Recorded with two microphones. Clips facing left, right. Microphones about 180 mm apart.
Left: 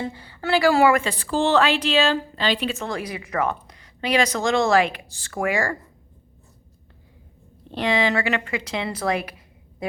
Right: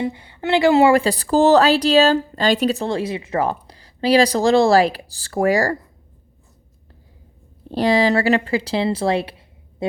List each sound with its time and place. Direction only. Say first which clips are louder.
0.0 s a woman's voice: right 5 dB; 20° right (ahead or behind); by 5.7 s 35° right (ahead or behind)
7.7 s a woman's voice: right 5 dB; 35° right (ahead or behind)